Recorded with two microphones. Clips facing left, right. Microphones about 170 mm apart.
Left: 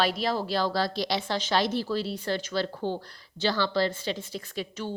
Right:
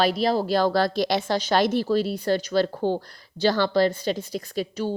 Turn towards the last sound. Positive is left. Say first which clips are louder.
# right 7 dB
turn(degrees=-40)  # may be behind; listen again after turning